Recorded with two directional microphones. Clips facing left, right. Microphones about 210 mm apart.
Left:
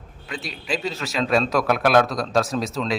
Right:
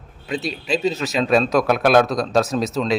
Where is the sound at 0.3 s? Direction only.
25° right (ahead or behind).